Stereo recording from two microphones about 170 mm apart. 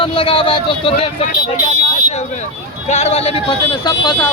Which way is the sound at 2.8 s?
40° left (ahead or behind).